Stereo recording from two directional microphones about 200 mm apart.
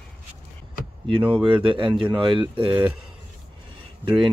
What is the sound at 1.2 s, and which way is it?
Speech, 5° right (ahead or behind).